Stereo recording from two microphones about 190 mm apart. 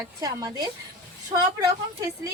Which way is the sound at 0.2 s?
20° right (ahead or behind).